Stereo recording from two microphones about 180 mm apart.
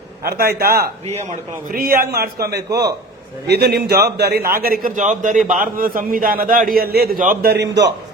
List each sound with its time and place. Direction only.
0.3 s a man's voice: 55° right (ahead or behind)
2.6 s a man's voice: 20° right (ahead or behind)
3.4 s a man's voice: 60° right (ahead or behind)
7.7 s a man's voice: 70° right (ahead or behind)